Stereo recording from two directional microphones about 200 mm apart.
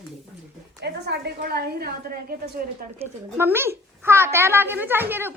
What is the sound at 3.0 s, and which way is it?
A child's voice, 10° right (ahead or behind).